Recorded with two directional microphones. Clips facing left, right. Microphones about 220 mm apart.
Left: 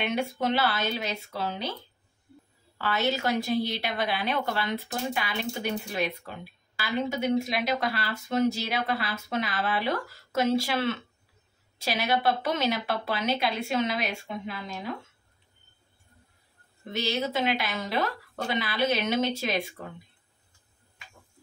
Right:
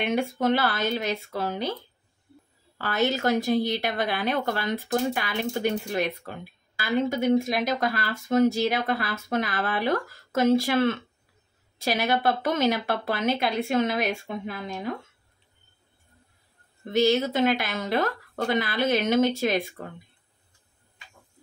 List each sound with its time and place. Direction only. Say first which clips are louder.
0.0 s a woman's voice: right 3 dB; 50° right (ahead or behind)
2.8 s a woman's voice: right 3 dB; 50° right (ahead or behind)
16.9 s a woman's voice: right 7 dB; 50° right (ahead or behind)